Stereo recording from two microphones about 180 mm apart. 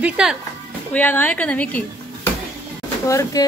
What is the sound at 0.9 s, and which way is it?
Speech, 10° left (ahead or behind).